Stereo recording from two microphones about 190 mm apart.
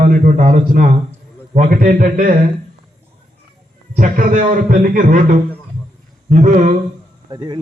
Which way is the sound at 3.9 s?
45° right (ahead or behind).